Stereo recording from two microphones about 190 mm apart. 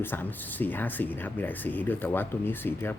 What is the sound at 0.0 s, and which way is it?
Speech, 10° left (ahead or behind).